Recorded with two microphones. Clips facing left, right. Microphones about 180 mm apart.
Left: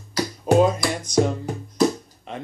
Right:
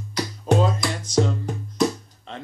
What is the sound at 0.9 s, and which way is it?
Music, 15° left (ahead or behind).